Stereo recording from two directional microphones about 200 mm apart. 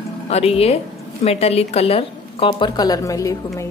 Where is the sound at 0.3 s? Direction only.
30° left (ahead or behind).